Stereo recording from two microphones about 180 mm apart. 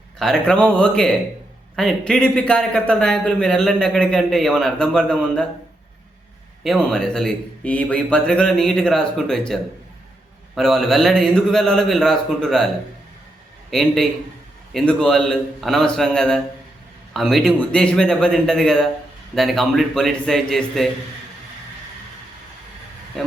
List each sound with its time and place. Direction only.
0.2 s a man's voice: 5° left (ahead or behind)
6.6 s a man's voice: centre (ahead or behind)
13.7 s a man's voice: centre (ahead or behind)
23.2 s speech: centre (ahead or behind)